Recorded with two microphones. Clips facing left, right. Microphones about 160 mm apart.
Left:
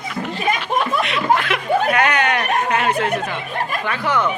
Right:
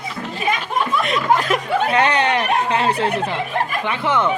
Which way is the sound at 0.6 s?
45° right (ahead or behind).